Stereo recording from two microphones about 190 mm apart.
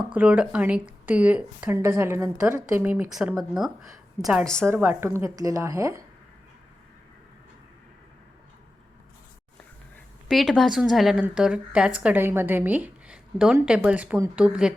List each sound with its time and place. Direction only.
0.0 s a woman's voice: 5° right (ahead or behind)
4.7 s a woman's voice: 10° right (ahead or behind)
10.2 s speech: centre (ahead or behind)